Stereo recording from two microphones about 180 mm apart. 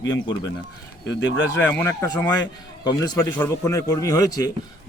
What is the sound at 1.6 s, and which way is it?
A man's voice, 10° left (ahead or behind).